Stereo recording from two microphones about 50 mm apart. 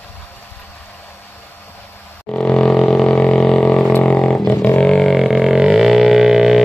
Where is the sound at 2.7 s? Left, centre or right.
Centre.